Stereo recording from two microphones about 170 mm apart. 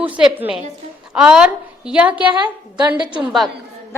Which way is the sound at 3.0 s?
25° right (ahead or behind).